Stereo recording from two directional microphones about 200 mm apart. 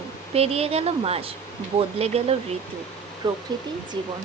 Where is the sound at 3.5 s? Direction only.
20° right (ahead or behind).